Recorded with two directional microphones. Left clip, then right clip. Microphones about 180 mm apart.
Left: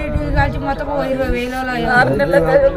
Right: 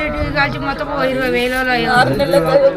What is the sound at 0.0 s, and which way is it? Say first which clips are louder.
A man's voice: right 2 dB; 65° left (ahead or behind).